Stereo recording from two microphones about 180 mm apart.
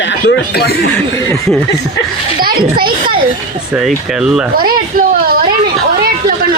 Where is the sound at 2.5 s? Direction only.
55° right (ahead or behind).